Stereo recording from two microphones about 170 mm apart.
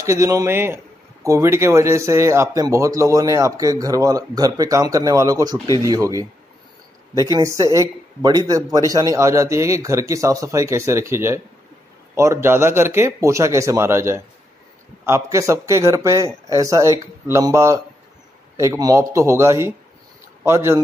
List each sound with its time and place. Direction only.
0.0 s speech: 15° right (ahead or behind)
7.2 s speech: 20° right (ahead or behind)